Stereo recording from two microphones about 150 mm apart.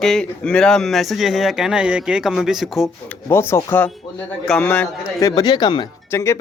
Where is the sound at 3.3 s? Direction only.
15° left (ahead or behind).